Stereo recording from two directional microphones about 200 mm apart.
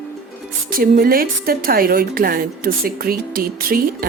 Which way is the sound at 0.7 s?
45° right (ahead or behind).